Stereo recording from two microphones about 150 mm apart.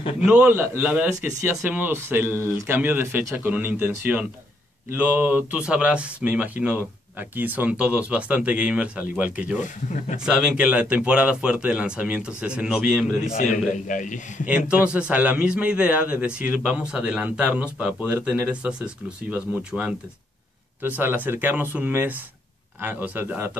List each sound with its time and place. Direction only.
0.2 s a man's voice: 5° right (ahead or behind)
13.4 s a man's voice: 60° left (ahead or behind)
14.7 s a man's voice: 5° right (ahead or behind)